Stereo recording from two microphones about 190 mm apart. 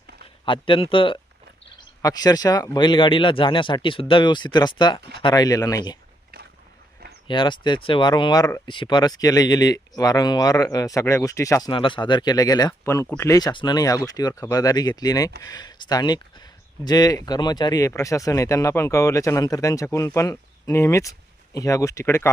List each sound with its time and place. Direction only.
0.4 s speech: 25° left (ahead or behind)
7.3 s speech: 25° left (ahead or behind)
11.7 s speech: 25° left (ahead or behind)